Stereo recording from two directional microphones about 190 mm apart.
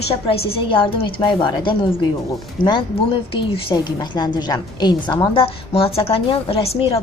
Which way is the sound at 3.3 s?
25° left (ahead or behind).